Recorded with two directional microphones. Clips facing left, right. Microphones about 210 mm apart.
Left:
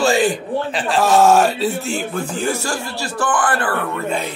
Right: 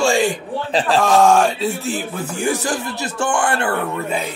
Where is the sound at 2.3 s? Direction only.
15° right (ahead or behind).